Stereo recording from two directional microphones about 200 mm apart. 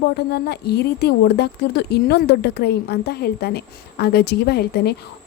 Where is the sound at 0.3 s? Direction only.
55° left (ahead or behind).